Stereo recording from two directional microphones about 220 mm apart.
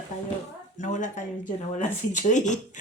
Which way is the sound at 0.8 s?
35° left (ahead or behind).